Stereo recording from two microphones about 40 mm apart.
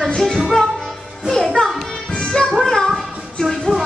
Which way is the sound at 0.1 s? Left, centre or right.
Centre.